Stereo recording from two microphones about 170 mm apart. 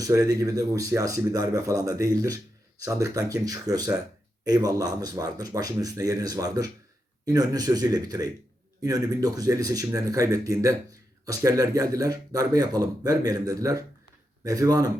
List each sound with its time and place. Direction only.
0.0 s speech: 20° right (ahead or behind)